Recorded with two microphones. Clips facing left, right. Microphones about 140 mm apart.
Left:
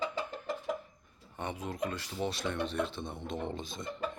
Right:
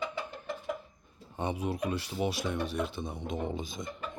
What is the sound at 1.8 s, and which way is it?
Speech, 15° right (ahead or behind).